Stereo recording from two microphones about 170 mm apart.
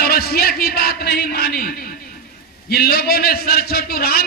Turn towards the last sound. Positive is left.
turn(degrees=65)  # may be behind; listen again after turning